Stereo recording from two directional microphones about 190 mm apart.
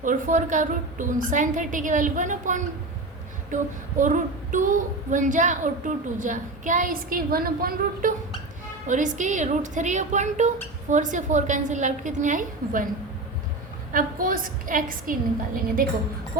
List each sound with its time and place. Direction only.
0.0 s a woman's voice: 45° right (ahead or behind)
13.9 s speech: 45° right (ahead or behind)